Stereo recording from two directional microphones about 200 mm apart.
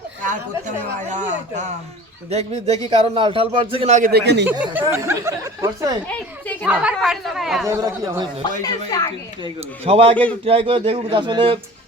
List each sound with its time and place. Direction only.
1.0 s a man's voice: 35° right (ahead or behind)
4.1 s speech: 60° right (ahead or behind)
4.4 s speech: 10° right (ahead or behind)
6.1 s chatter: 5° left (ahead or behind)
6.7 s speech: 5° right (ahead or behind)
7.7 s speech: 15° right (ahead or behind)
8.6 s a woman's voice: 20° left (ahead or behind)
9.8 s a man's voice: 30° right (ahead or behind)